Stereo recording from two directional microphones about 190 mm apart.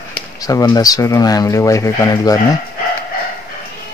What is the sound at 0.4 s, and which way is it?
Speech, 20° left (ahead or behind).